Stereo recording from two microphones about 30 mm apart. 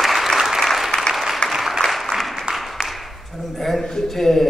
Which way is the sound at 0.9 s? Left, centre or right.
Left.